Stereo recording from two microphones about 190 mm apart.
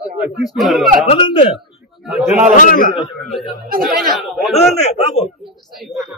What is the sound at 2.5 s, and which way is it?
Speech, 45° left (ahead or behind).